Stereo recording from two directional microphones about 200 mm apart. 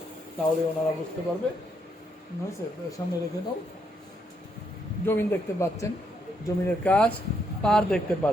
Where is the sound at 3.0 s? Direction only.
20° left (ahead or behind).